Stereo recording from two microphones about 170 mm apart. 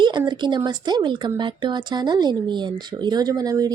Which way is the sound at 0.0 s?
25° right (ahead or behind).